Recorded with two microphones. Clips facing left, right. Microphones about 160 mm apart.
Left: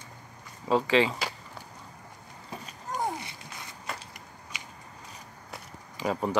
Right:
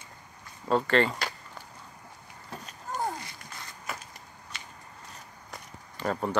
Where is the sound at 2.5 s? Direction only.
10° left (ahead or behind).